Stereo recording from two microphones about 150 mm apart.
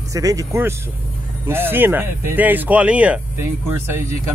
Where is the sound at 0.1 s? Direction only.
20° right (ahead or behind).